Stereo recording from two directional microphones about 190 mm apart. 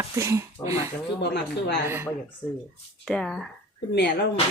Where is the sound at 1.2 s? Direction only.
60° left (ahead or behind).